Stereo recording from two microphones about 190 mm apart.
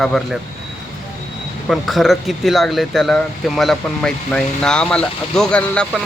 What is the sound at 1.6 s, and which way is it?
Speech, centre (ahead or behind).